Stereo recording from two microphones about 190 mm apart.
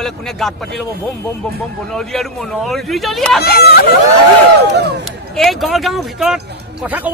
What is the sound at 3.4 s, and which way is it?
Speech, 55° left (ahead or behind).